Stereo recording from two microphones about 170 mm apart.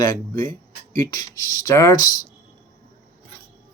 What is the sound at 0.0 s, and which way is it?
Speech, 15° left (ahead or behind).